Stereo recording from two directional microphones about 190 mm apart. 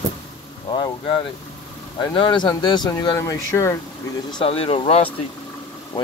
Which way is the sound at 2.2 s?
25° left (ahead or behind).